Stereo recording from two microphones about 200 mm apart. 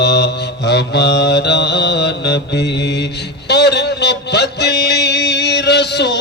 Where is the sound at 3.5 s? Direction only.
55° left (ahead or behind).